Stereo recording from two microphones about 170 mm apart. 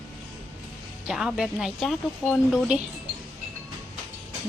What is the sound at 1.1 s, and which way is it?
Speech, 5° right (ahead or behind).